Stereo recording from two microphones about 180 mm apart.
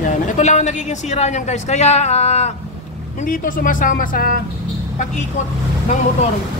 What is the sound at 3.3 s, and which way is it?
Speech, 50° left (ahead or behind).